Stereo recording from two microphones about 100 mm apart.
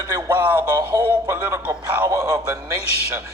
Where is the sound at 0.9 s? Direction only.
45° right (ahead or behind).